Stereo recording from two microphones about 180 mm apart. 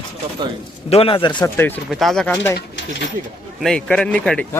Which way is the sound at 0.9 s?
30° left (ahead or behind).